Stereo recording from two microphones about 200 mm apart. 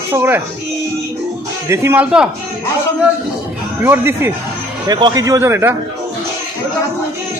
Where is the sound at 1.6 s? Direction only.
15° right (ahead or behind).